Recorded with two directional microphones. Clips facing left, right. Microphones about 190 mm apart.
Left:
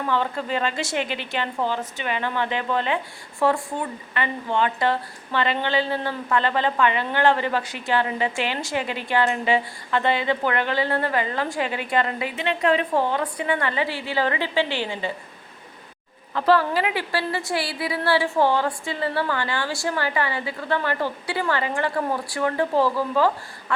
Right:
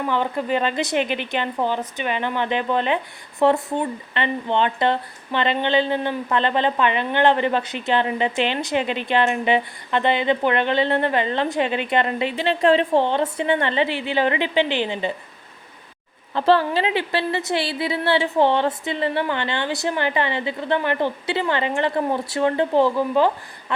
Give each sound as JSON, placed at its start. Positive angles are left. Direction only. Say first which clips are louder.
{"t": 0.0, "sound": "speech", "louder": "right 2 dB", "side_deg": -15}
{"t": 16.3, "sound": "speech", "louder": "right 2 dB", "side_deg": -25}